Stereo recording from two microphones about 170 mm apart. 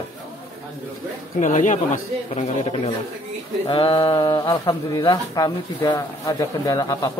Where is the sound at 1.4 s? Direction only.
45° left (ahead or behind).